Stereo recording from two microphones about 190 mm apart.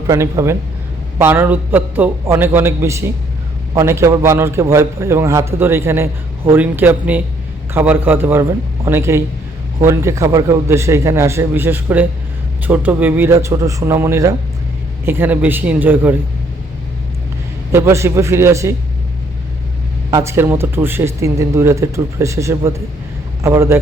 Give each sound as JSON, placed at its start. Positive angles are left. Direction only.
{"t": 0.1, "sound": "a man's voice", "side_deg": -15}
{"t": 17.7, "sound": "a man's voice", "side_deg": -15}
{"t": 20.1, "sound": "a man's voice", "side_deg": -15}